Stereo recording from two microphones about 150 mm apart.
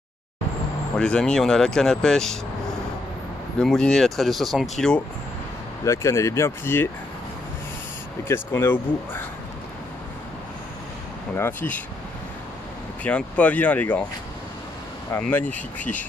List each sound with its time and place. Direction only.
0.9 s speech: 5° left (ahead or behind)
3.5 s speech: 5° left (ahead or behind)
5.9 s speech: 20° left (ahead or behind)
8.3 s speech: 15° left (ahead or behind)
11.3 s speech: 10° left (ahead or behind)
13.0 s speech: 10° left (ahead or behind)
15.1 s speech: 10° left (ahead or behind)